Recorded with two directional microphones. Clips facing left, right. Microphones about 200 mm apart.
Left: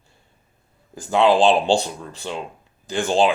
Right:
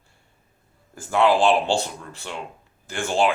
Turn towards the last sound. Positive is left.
turn(degrees=20)  # may be behind; listen again after turning